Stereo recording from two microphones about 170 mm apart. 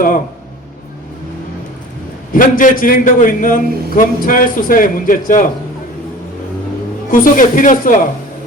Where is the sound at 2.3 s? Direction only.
50° left (ahead or behind).